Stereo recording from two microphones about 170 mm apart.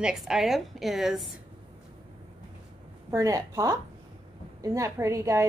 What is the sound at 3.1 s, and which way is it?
A woman's voice, 20° right (ahead or behind).